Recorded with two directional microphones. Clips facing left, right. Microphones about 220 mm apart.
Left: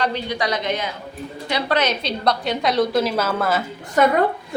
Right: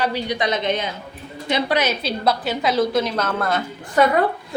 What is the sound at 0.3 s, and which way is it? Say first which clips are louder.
A woman's voice: right 1 dB; 20° right (ahead or behind).